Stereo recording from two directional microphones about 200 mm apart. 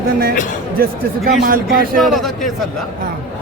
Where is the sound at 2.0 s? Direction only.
Centre (ahead or behind).